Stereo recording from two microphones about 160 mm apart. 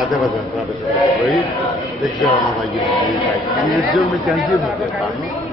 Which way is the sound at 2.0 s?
Centre (ahead or behind).